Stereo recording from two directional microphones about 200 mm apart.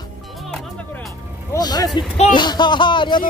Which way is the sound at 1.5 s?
20° left (ahead or behind).